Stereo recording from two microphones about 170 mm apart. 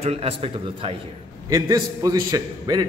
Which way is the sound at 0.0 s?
35° right (ahead or behind).